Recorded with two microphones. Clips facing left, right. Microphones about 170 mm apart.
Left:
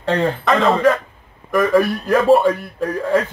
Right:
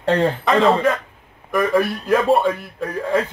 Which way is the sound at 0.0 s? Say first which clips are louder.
Right 1 dB; 30° right (ahead or behind).